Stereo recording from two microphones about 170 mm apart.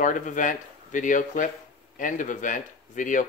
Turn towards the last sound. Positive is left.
turn(degrees=50)  # may be behind; listen again after turning